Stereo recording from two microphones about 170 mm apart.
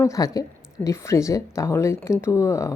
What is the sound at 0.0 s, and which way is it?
Speech, 20° left (ahead or behind).